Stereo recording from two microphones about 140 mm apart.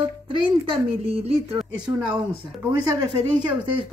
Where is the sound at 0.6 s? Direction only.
40° right (ahead or behind).